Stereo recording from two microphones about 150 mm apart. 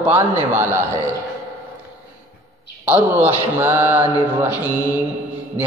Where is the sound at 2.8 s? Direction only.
15° right (ahead or behind).